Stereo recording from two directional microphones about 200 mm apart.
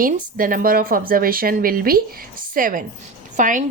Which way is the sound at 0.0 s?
45° right (ahead or behind).